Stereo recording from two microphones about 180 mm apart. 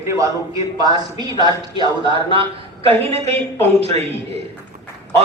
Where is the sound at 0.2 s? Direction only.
20° right (ahead or behind).